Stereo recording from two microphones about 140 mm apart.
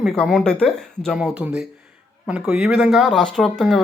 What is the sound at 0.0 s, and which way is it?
Speech, centre (ahead or behind).